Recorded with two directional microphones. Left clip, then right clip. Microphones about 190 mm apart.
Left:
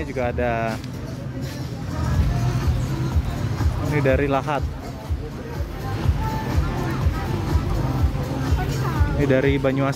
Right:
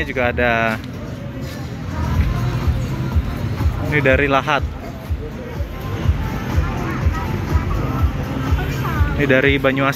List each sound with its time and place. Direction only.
0.0 s speech: 10° left (ahead or behind)
3.9 s speech: 10° left (ahead or behind)
9.2 s speech: 15° left (ahead or behind)